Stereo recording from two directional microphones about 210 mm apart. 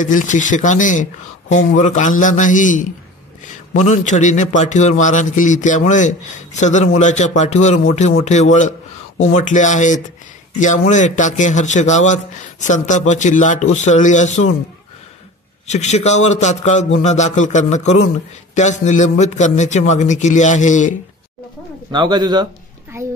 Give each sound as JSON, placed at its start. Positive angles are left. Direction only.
{"t": 0.0, "sound": "a man's voice", "side_deg": 35}
{"t": 15.7, "sound": "a man's voice", "side_deg": 30}
{"t": 21.9, "sound": "a child's voice", "side_deg": -20}